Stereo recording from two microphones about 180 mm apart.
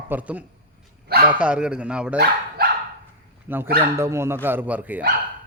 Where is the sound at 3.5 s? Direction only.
10° right (ahead or behind).